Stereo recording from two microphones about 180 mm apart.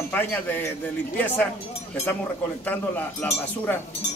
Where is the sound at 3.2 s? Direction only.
10° left (ahead or behind).